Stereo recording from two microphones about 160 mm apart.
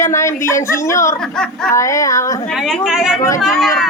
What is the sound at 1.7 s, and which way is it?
Child singing, 20° left (ahead or behind).